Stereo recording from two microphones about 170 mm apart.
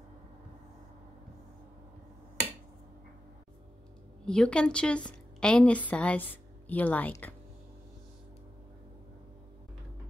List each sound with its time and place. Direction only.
4.3 s a woman's voice: 5° left (ahead or behind)